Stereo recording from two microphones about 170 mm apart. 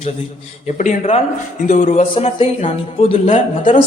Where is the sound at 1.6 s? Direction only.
45° left (ahead or behind).